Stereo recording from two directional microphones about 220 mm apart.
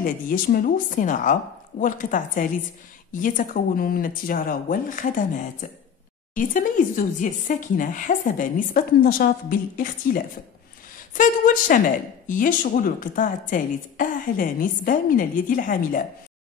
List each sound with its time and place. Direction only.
0.0 s speech: 40° left (ahead or behind)